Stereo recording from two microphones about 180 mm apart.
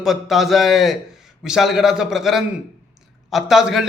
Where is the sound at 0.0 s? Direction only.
Centre (ahead or behind).